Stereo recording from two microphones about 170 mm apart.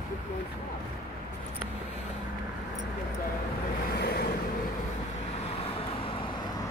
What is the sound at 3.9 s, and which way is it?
Vehicle, 65° left (ahead or behind).